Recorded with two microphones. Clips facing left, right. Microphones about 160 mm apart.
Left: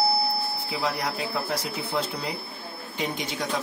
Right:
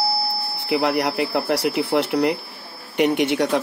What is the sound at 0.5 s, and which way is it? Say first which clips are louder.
Speech: right 9 dB; 70° right (ahead or behind).